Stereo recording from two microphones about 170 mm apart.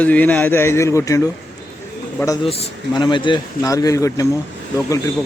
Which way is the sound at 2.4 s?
35° left (ahead or behind).